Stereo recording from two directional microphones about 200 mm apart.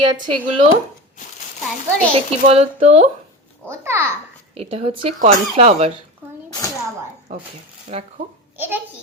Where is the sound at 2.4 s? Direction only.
30° right (ahead or behind).